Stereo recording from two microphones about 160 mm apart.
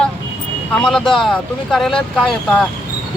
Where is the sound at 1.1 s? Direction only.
Centre (ahead or behind).